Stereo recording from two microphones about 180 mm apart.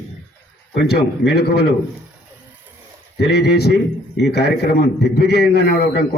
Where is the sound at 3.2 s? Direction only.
65° left (ahead or behind).